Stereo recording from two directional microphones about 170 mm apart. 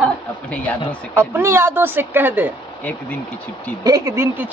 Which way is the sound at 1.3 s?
15° right (ahead or behind).